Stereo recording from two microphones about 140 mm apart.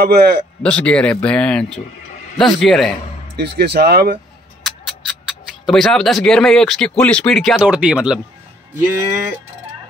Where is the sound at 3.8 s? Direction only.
90° right.